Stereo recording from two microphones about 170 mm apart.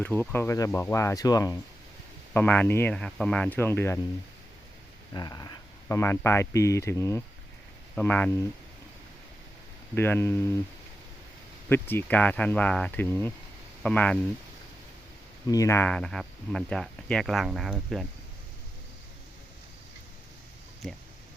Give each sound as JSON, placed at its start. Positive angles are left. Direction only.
{"t": 0.0, "sound": "speech", "side_deg": 10}
{"t": 2.3, "sound": "speech", "side_deg": 10}
{"t": 5.1, "sound": "speech", "side_deg": 20}
{"t": 9.9, "sound": "speech", "side_deg": 15}
{"t": 11.7, "sound": "speech", "side_deg": 10}
{"t": 15.4, "sound": "speech", "side_deg": 20}
{"t": 20.8, "sound": "speech", "side_deg": 0}